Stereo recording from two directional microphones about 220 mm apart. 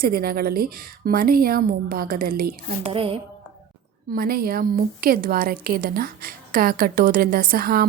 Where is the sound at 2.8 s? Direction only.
25° right (ahead or behind).